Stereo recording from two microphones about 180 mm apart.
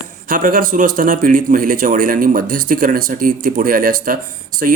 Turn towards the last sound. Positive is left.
turn(degrees=-45)  # may be behind; listen again after turning